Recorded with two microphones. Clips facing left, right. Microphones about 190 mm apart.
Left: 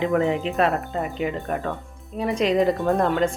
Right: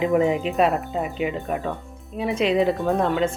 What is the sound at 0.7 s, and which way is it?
A woman's voice, centre (ahead or behind).